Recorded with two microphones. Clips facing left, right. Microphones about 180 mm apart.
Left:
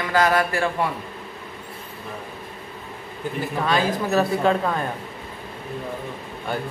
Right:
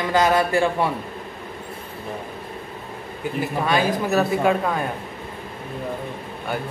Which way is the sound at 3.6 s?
10° right (ahead or behind).